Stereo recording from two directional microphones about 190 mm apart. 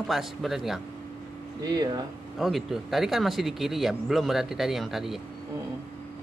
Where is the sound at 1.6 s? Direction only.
20° right (ahead or behind).